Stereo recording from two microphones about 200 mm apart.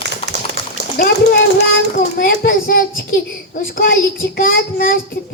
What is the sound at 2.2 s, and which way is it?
Child singing, 45° left (ahead or behind).